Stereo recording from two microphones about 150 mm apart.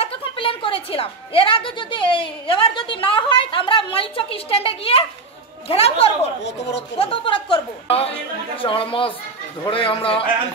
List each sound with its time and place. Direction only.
0.0 s a woman's voice: 40° left (ahead or behind)